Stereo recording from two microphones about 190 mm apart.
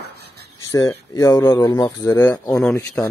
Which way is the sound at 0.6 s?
15° left (ahead or behind).